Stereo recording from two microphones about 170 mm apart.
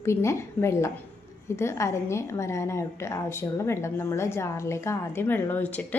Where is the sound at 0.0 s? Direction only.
15° left (ahead or behind).